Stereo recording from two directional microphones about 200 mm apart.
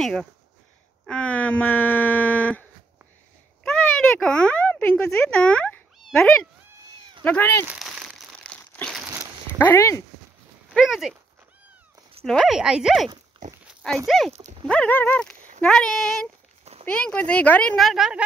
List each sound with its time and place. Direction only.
0.0 s speech: centre (ahead or behind)
3.6 s a sound: 5° left (ahead or behind)
7.2 s speech: 10° left (ahead or behind)
7.6 s crumpling: 5° right (ahead or behind)
9.1 s a sound: 15° right (ahead or behind)
9.6 s speech: 10° left (ahead or behind)
10.7 s speech: centre (ahead or behind)
12.3 s speech: centre (ahead or behind)
14.3 s speech: 35° right (ahead or behind)
14.7 s speech: 10° left (ahead or behind)